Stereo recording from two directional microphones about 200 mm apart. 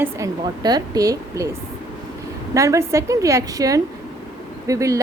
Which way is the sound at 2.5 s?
15° right (ahead or behind).